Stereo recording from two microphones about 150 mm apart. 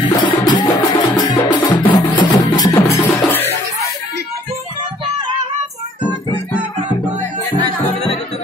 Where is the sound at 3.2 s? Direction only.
15° left (ahead or behind).